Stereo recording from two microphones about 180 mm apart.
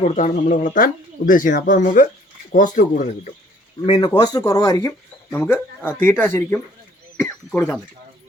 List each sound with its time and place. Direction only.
0.0 s speech: 40° left (ahead or behind)
3.8 s speech: 25° left (ahead or behind)
7.2 s wild animals: 10° left (ahead or behind)